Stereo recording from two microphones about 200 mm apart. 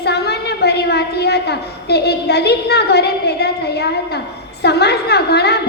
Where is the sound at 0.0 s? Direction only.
55° left (ahead or behind).